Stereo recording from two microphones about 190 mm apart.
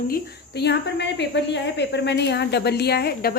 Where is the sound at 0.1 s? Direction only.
60° left (ahead or behind).